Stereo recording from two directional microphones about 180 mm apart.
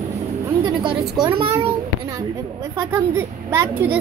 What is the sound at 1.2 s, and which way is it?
Speech, 30° right (ahead or behind).